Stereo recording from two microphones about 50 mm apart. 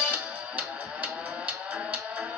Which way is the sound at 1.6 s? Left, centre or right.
Right.